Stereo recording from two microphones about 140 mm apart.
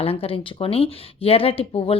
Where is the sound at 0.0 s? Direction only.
40° left (ahead or behind).